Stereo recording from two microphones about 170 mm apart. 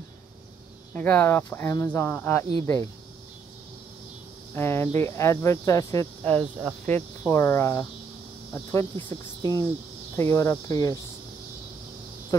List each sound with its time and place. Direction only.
0.9 s speech: 10° left (ahead or behind)
4.6 s speech: 15° left (ahead or behind)